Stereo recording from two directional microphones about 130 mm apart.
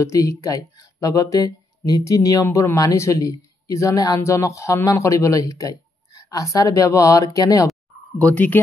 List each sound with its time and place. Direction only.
0.0 s speech: 25° left (ahead or behind)
8.2 s speech: 10° left (ahead or behind)